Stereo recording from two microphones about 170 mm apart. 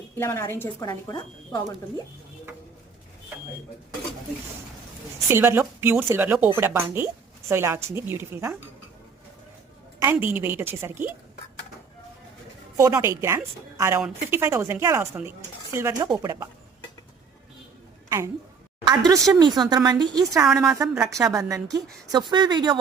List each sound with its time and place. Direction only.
0.2 s speech: 15° left (ahead or behind)
5.3 s speech: 15° right (ahead or behind)
10.0 s speech: 15° right (ahead or behind)
12.7 s speech: 15° right (ahead or behind)
18.9 s speech: 20° right (ahead or behind)
20.4 s a woman's voice: centre (ahead or behind)
21.5 s speech: 20° right (ahead or behind)